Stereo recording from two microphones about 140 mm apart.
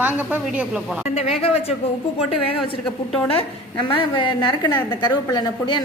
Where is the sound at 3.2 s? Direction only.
40° left (ahead or behind).